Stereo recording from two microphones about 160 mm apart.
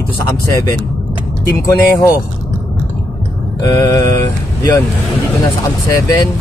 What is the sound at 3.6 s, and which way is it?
Speech, 25° left (ahead or behind).